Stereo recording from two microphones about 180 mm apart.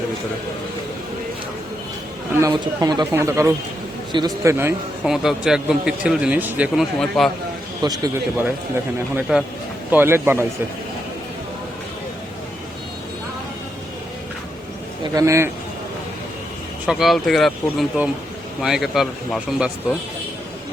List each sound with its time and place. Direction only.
2.4 s speech: 20° right (ahead or behind)
5.0 s speech: centre (ahead or behind)
7.8 s a man's voice: 20° right (ahead or behind)
9.3 s speech: 5° right (ahead or behind)
15.0 s a man's voice: 20° right (ahead or behind)
16.8 s speech: centre (ahead or behind)